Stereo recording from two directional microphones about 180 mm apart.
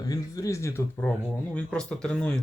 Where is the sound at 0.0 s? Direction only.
20° left (ahead or behind).